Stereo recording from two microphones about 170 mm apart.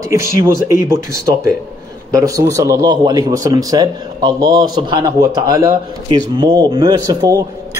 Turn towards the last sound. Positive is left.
turn(degrees=-20)  # may be behind; listen again after turning